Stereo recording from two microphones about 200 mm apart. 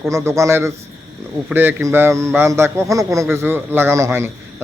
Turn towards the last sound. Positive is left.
turn(degrees=-15)  # may be behind; listen again after turning